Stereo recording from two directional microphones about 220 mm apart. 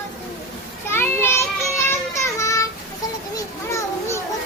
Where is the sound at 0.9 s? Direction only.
10° left (ahead or behind).